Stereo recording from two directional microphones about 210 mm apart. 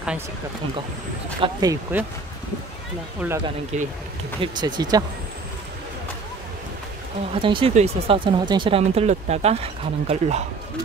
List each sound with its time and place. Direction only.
1.4 s speech: 15° right (ahead or behind)
3.2 s speech: 10° right (ahead or behind)
3.7 s speech: 35° right (ahead or behind)
4.4 s speech: 20° right (ahead or behind)
7.3 s speech: 25° right (ahead or behind)